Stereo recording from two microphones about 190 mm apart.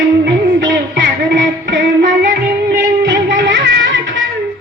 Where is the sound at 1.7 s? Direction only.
70° right (ahead or behind).